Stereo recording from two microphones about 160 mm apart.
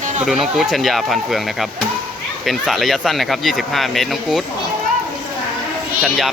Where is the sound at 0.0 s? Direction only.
45° right (ahead or behind).